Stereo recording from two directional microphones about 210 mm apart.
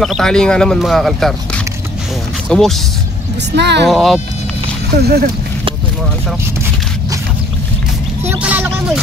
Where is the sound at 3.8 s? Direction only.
Centre (ahead or behind).